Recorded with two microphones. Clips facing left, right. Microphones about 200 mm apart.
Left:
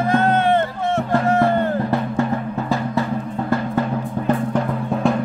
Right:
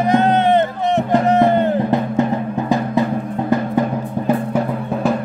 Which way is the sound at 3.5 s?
15° right (ahead or behind).